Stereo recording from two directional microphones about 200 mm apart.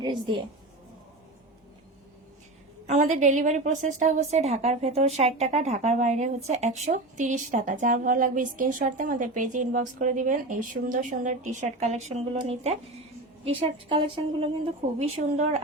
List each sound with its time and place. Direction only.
0.0 s a woman's voice: 25° right (ahead or behind)
2.8 s a woman's voice: 35° right (ahead or behind)